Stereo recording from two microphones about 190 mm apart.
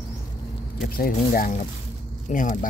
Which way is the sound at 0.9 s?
50° left (ahead or behind).